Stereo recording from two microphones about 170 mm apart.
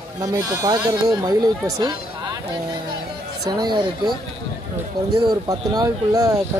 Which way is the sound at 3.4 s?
25° right (ahead or behind).